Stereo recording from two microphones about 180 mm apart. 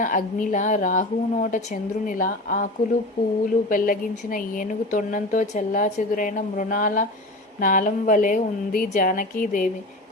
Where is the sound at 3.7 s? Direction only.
50° left (ahead or behind).